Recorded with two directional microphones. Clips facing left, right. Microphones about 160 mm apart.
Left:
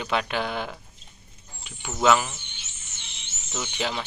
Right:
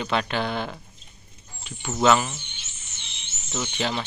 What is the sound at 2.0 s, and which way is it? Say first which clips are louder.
Speech: right 1 dB; 5° left (ahead or behind).